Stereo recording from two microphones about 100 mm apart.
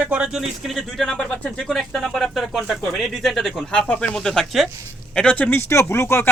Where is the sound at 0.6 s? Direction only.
Centre (ahead or behind).